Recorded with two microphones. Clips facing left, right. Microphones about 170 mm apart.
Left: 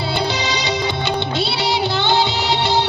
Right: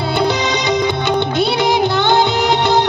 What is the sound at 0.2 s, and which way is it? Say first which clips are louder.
Music: right 5 dB; 50° right (ahead or behind).